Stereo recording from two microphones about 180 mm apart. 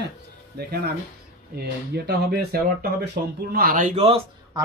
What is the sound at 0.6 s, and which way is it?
Speech, 60° right (ahead or behind).